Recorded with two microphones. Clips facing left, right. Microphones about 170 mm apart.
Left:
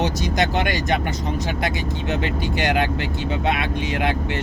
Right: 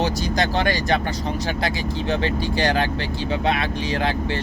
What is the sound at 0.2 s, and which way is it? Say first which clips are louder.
Speech: even; 20° left (ahead or behind).